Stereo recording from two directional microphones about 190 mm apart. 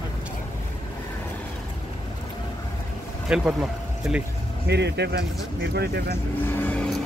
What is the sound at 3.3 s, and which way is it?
Speech, 5° right (ahead or behind).